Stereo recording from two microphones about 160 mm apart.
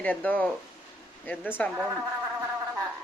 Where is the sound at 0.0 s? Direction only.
10° left (ahead or behind).